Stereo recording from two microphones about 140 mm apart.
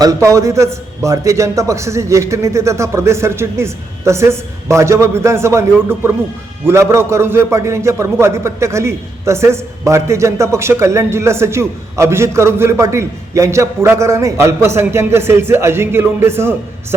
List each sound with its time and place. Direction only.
0.0 s a man's voice: 25° right (ahead or behind)